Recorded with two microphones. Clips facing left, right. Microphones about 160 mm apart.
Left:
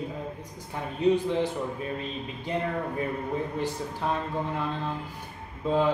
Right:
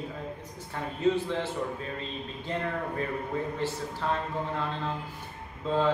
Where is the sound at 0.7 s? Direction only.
15° left (ahead or behind).